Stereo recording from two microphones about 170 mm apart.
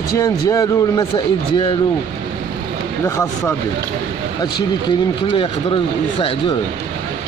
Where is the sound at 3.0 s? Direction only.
20° left (ahead or behind).